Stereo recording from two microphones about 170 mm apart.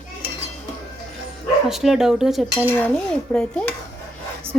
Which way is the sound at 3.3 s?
5° left (ahead or behind).